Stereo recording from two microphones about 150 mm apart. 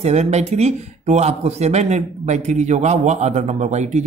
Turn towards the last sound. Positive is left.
turn(degrees=-50)  # may be behind; listen again after turning